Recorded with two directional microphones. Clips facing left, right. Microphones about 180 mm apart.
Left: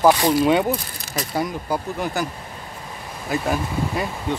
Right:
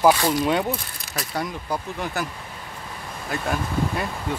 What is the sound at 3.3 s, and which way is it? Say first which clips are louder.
Speech: left 3 dB; 5° left (ahead or behind).